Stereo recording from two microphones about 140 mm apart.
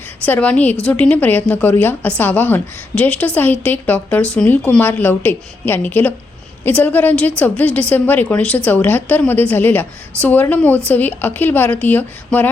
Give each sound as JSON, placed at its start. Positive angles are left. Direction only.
{"t": 0.3, "sound": "a woman's voice", "side_deg": 10}